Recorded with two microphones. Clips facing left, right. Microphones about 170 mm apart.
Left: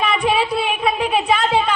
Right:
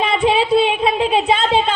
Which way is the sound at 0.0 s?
25° right (ahead or behind).